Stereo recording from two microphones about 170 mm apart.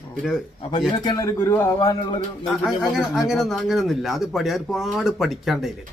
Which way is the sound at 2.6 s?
Centre (ahead or behind).